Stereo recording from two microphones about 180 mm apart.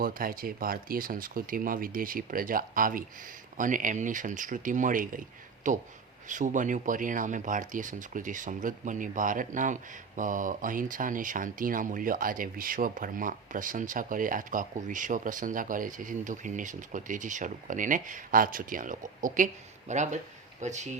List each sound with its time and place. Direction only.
0.0 s speech: 50° right (ahead or behind)